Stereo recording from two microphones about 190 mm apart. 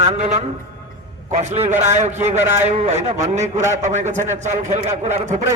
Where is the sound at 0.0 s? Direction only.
35° right (ahead or behind).